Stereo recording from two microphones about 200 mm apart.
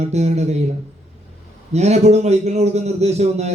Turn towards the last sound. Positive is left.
turn(degrees=-35)  # may be behind; listen again after turning